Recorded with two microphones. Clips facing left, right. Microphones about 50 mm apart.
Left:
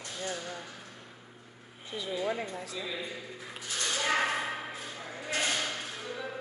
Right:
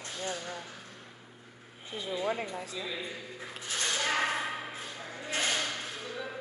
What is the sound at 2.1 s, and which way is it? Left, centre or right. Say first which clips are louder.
Speech: right 1 dB; centre.